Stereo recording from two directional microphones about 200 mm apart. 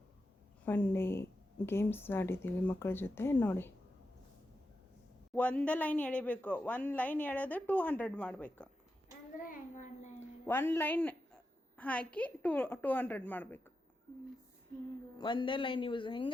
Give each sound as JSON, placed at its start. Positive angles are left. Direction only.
{"t": 0.6, "sound": "speech", "side_deg": 10}
{"t": 5.3, "sound": "speech", "side_deg": 5}
{"t": 9.4, "sound": "a child's voice", "side_deg": 40}
{"t": 10.4, "sound": "speech", "side_deg": 10}
{"t": 15.2, "sound": "a man's voice", "side_deg": 25}